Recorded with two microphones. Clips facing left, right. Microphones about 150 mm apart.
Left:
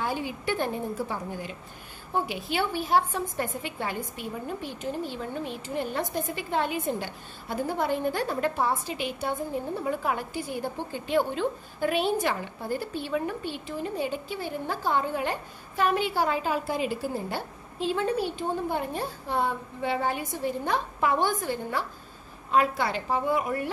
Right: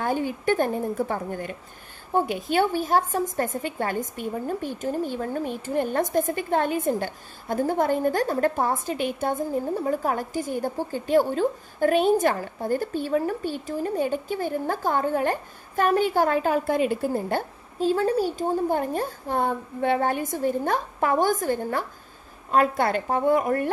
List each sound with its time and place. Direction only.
0.0 s a woman's voice: 50° right (ahead or behind)